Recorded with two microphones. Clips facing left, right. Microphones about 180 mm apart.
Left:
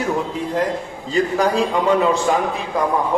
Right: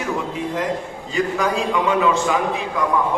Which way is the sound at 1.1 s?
35° left (ahead or behind).